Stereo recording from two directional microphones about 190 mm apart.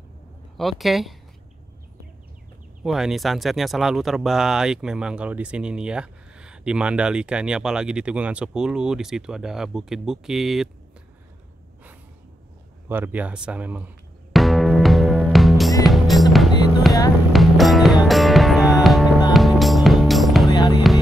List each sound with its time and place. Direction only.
0.6 s speech: centre (ahead or behind)
2.8 s speech: centre (ahead or behind)
12.8 s music: 10° right (ahead or behind)
20.5 s music: 20° left (ahead or behind)